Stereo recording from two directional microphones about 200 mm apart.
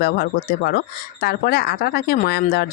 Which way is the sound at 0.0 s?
50° left (ahead or behind).